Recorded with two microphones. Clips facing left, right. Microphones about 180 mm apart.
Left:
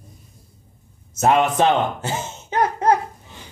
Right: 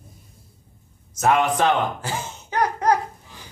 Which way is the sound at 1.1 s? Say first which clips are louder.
Left 2 dB; 25° left (ahead or behind).